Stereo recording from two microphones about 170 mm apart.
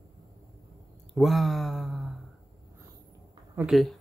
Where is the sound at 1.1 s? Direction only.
Centre (ahead or behind).